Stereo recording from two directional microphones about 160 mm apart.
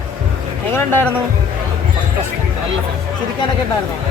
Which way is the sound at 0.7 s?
15° left (ahead or behind).